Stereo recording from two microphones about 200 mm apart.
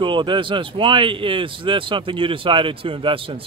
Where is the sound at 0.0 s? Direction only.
25° right (ahead or behind).